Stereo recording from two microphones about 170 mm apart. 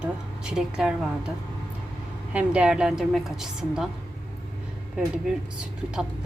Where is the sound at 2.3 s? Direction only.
5° right (ahead or behind).